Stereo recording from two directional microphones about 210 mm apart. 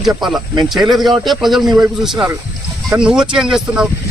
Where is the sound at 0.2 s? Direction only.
Centre (ahead or behind).